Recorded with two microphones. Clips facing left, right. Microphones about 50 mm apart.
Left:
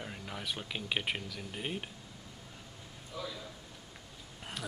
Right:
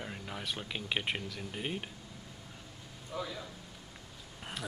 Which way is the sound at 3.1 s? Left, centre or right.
Right.